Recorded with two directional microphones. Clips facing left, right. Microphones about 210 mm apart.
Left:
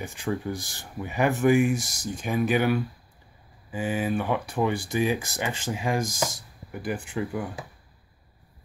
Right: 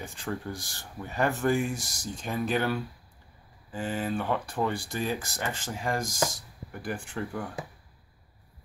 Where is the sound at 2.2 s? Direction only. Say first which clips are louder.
Left 5 dB; 10° left (ahead or behind).